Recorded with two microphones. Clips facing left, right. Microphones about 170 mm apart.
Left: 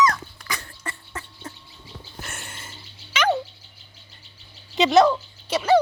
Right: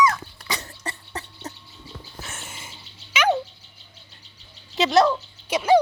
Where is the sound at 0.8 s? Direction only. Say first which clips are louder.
Right 2 dB; 40° right (ahead or behind).